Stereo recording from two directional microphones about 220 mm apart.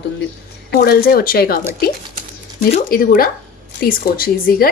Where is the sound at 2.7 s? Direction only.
40° left (ahead or behind).